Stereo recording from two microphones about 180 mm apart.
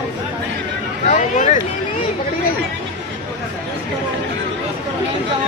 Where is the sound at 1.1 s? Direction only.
45° left (ahead or behind).